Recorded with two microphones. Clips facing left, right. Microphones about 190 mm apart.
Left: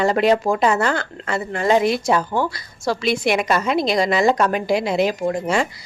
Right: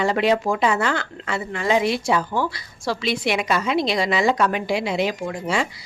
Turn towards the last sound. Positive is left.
turn(degrees=45)  # may be behind; listen again after turning